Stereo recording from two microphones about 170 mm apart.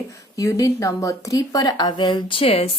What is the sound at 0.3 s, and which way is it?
Speech, 20° left (ahead or behind).